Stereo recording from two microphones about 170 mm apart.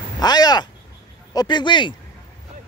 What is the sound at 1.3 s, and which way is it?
Speech, 25° left (ahead or behind).